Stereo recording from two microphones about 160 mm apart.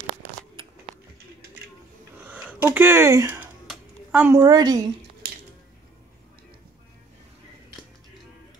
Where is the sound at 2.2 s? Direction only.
10° right (ahead or behind).